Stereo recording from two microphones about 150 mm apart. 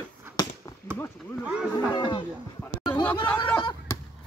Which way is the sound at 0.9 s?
15° left (ahead or behind).